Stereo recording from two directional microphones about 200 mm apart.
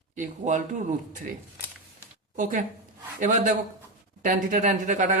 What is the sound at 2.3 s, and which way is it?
A woman's voice, 40° right (ahead or behind).